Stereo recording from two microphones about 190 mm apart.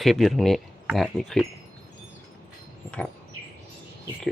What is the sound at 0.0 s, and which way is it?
Speech, centre (ahead or behind).